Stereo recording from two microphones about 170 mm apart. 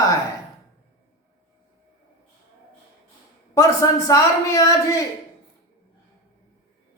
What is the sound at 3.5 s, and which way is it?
A man's voice, 20° left (ahead or behind).